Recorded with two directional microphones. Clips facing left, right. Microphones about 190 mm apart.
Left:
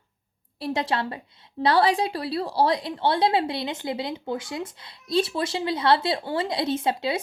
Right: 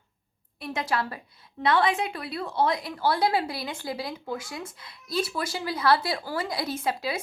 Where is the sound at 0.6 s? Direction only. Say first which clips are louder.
Left 3 dB; 30° left (ahead or behind).